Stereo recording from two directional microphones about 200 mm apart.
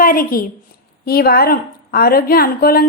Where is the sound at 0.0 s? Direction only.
45° left (ahead or behind).